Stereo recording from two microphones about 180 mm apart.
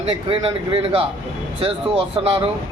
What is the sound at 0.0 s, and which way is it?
A man's voice, 30° right (ahead or behind).